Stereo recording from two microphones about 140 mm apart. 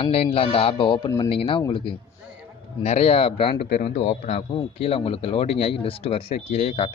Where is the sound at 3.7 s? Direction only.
70° left (ahead or behind).